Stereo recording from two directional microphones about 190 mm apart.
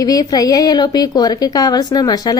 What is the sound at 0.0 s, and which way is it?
A woman's voice, 20° left (ahead or behind).